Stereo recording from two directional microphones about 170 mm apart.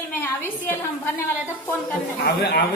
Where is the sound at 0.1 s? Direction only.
15° left (ahead or behind).